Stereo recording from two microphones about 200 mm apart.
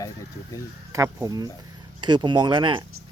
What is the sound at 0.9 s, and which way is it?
Speech, 15° right (ahead or behind).